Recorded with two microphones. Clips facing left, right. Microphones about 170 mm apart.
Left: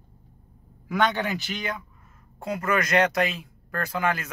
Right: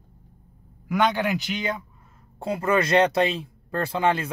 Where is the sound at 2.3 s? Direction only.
30° right (ahead or behind).